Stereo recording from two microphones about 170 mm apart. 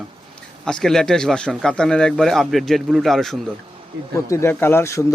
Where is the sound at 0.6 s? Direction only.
5° left (ahead or behind).